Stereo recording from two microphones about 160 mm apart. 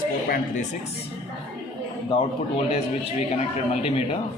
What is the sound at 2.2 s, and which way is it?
A man's voice, 35° left (ahead or behind).